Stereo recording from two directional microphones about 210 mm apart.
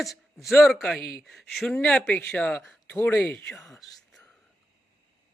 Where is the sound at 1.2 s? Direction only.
Centre (ahead or behind).